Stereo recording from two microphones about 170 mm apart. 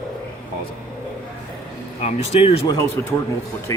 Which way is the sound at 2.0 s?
40° left (ahead or behind).